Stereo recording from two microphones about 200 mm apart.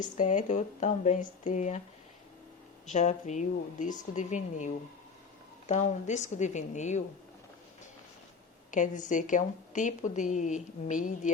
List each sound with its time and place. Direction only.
0.0 s a woman's voice: 40° left (ahead or behind)
2.8 s a woman's voice: 35° left (ahead or behind)
8.7 s a woman's voice: 40° left (ahead or behind)